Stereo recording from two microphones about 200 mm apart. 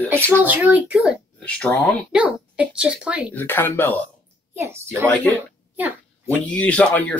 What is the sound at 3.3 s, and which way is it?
Speech, 10° left (ahead or behind).